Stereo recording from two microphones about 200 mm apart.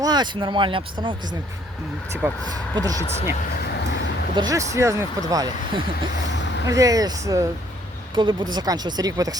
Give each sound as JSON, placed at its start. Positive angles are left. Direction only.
{"t": 0.0, "sound": "speech", "side_deg": -20}
{"t": 2.2, "sound": "speech", "side_deg": -10}
{"t": 4.4, "sound": "speech", "side_deg": -15}